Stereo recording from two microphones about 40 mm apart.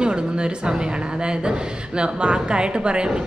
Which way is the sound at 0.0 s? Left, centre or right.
Right.